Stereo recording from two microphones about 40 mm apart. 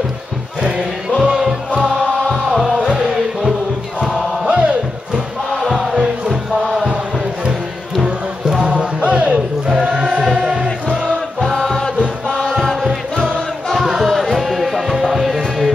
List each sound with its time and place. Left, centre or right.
0.6 s crowd: centre
1.2 s music: centre
4.5 s crowd: right
5.5 s music: centre
8.0 s music: centre
8.6 s chant: right
9.7 s choir: centre
10.2 s music: centre
11.5 s music: centre
12.4 s chant: centre
13.2 s music: centre